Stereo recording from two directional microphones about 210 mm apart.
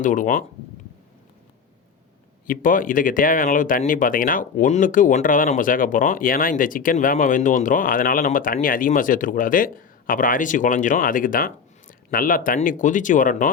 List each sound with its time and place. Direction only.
0.0 s speech: 40° left (ahead or behind)
2.5 s speech: 40° left (ahead or behind)